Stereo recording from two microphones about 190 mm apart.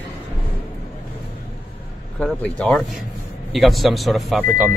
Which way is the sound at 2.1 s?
5° left (ahead or behind).